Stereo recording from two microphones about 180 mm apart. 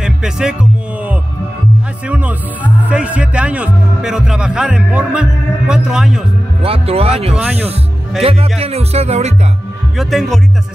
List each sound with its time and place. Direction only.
0.0 s music: 5° right (ahead or behind)
5.7 s a man's voice: 5° right (ahead or behind)
6.6 s speech: 35° right (ahead or behind)
7.3 s a man's voice: 5° right (ahead or behind)
8.2 s speech: 35° right (ahead or behind)
9.9 s a man's voice: centre (ahead or behind)